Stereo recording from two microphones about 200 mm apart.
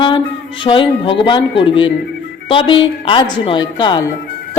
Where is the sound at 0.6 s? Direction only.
25° left (ahead or behind).